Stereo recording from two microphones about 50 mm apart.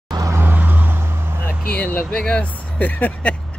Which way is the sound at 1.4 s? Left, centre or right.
Left.